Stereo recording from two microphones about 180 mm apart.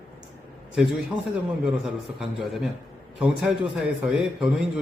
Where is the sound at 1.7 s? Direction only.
Centre (ahead or behind).